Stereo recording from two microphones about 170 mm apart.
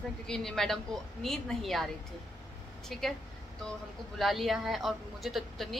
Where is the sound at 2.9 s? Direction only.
Centre (ahead or behind).